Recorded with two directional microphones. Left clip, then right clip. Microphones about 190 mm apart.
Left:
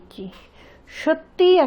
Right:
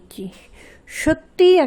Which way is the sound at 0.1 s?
45° right (ahead or behind).